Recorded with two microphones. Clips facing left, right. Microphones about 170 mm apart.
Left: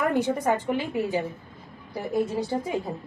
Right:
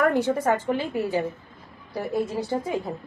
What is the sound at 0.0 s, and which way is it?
A woman's voice, 15° left (ahead or behind).